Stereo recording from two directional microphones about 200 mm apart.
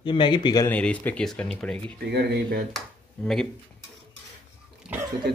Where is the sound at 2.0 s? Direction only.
55° right (ahead or behind).